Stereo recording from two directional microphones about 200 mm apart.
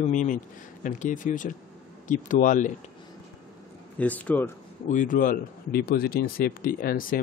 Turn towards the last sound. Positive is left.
turn(degrees=45)  # may be behind; listen again after turning